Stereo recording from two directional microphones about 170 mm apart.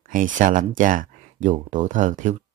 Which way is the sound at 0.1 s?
50° right (ahead or behind).